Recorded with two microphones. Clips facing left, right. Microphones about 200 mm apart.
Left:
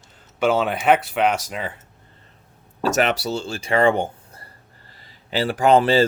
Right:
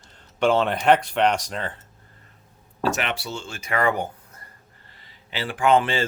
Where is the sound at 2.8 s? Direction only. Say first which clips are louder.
Left 5 dB; 40° left (ahead or behind).